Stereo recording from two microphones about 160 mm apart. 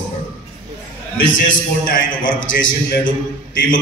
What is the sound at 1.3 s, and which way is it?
A man's voice, 55° left (ahead or behind).